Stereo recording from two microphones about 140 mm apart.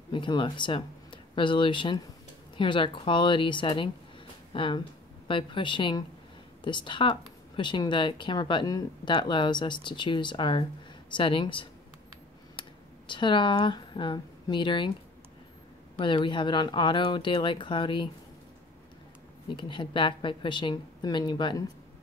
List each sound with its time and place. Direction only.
0.1 s speech: 35° left (ahead or behind)
16.0 s speech: 35° left (ahead or behind)
19.5 s speech: 35° left (ahead or behind)